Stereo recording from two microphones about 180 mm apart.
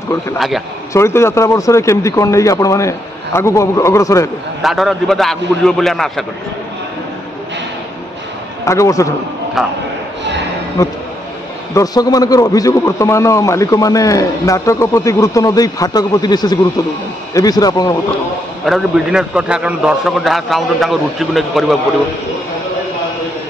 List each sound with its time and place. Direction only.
0.9 s a man's voice: 15° left (ahead or behind)
4.6 s a man's voice: centre (ahead or behind)
8.6 s a man's voice: 15° left (ahead or behind)
9.6 s a man's voice: centre (ahead or behind)
11.7 s a man's voice: 20° left (ahead or behind)
18.7 s a man's voice: 5° right (ahead or behind)